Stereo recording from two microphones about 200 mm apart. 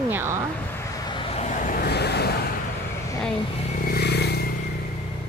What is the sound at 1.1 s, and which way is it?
Vehicle, 25° left (ahead or behind).